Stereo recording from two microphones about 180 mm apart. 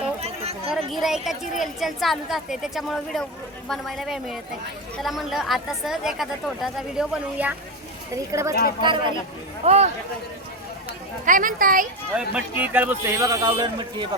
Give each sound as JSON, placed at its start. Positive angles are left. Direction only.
{"t": 0.2, "sound": "a sound", "side_deg": -35}
{"t": 0.7, "sound": "a woman's voice", "side_deg": 0}
{"t": 8.1, "sound": "a man's voice", "side_deg": -15}
{"t": 9.6, "sound": "speech", "side_deg": -35}
{"t": 11.3, "sound": "speech", "side_deg": -50}
{"t": 12.1, "sound": "a man's voice", "side_deg": -10}